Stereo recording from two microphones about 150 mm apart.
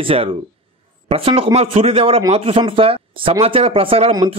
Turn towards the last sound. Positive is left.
turn(degrees=-40)  # may be behind; listen again after turning